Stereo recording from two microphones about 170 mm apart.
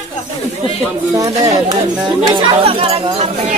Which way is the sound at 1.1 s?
20° right (ahead or behind).